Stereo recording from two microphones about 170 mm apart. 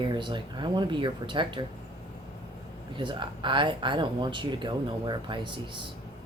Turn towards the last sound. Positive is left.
turn(degrees=-30)  # may be behind; listen again after turning